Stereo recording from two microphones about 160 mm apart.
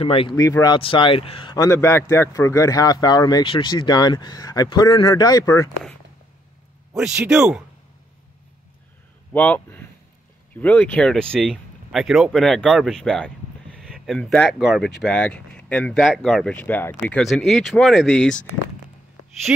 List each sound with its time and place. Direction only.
0.0 s speech: 35° left (ahead or behind)
0.4 s speech: 20° left (ahead or behind)
0.7 s speech: 35° left (ahead or behind)
1.7 s speech: 15° left (ahead or behind)
7.0 s speech: 5° right (ahead or behind)
9.3 s speech: 10° left (ahead or behind)